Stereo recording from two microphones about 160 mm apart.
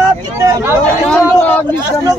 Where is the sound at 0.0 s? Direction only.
20° right (ahead or behind).